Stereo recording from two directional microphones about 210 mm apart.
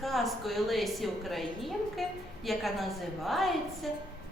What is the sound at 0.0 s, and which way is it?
A woman's voice, centre (ahead or behind).